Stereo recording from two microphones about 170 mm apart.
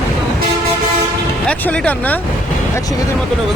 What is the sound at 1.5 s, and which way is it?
Speech, 5° left (ahead or behind).